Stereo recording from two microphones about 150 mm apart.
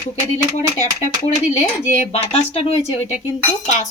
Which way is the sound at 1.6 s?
50° left (ahead or behind).